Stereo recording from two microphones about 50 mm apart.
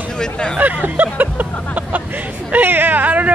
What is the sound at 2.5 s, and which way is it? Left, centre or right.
Speech, right.